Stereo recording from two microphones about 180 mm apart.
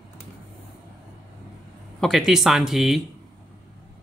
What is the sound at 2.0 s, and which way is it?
Speech, centre (ahead or behind).